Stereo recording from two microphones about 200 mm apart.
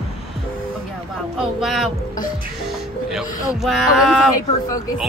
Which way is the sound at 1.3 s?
Centre (ahead or behind).